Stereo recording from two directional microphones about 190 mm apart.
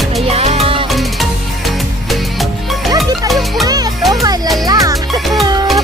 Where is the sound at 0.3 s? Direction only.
30° right (ahead or behind).